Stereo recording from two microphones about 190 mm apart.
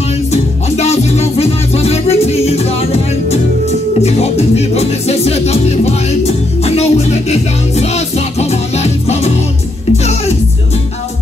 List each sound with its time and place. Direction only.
0.3 s music: 35° left (ahead or behind)